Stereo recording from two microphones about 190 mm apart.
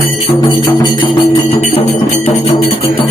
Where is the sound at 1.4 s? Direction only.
35° left (ahead or behind).